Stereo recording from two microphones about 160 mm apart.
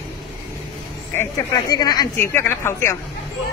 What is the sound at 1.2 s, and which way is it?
A woman's voice, 25° left (ahead or behind).